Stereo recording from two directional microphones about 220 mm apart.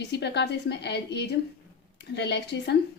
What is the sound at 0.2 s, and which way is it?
A woman's voice, 50° left (ahead or behind).